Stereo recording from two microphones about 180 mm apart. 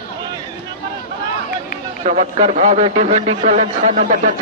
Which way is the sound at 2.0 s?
40° right (ahead or behind).